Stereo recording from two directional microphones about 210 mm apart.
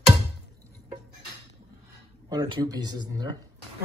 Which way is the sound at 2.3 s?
20° right (ahead or behind).